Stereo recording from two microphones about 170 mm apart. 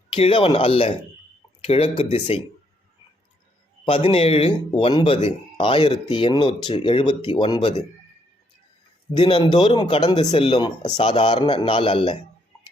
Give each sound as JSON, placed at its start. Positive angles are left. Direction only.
{"t": 0.1, "sound": "speech", "side_deg": 30}
{"t": 3.8, "sound": "speech", "side_deg": 30}
{"t": 9.1, "sound": "speech", "side_deg": 30}